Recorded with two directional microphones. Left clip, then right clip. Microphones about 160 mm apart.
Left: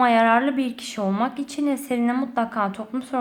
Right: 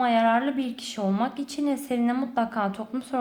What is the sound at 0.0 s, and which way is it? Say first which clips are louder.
A woman's voice: left 4 dB; 25° left (ahead or behind).